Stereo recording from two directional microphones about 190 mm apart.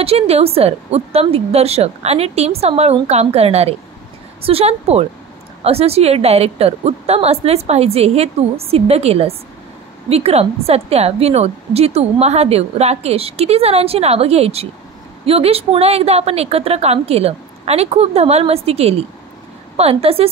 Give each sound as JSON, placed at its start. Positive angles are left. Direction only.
{"t": 0.0, "sound": "a woman's voice", "side_deg": -30}